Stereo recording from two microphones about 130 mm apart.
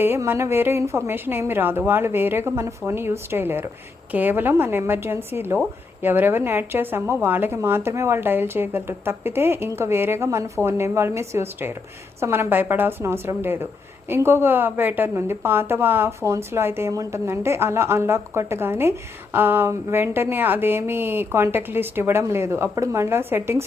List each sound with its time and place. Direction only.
0.0 s a woman's voice: 15° right (ahead or behind)